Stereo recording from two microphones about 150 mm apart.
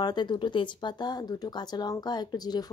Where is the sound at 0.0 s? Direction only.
30° left (ahead or behind).